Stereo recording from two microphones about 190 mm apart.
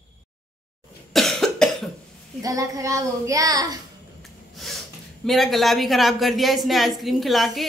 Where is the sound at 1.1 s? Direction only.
Centre (ahead or behind).